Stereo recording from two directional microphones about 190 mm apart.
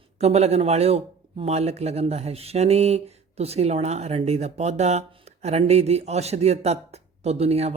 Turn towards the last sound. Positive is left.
turn(degrees=-35)  # may be behind; listen again after turning